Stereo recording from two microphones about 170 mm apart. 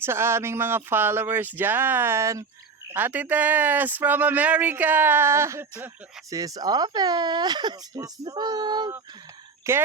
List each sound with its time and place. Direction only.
0.0 s speech: 15° right (ahead or behind)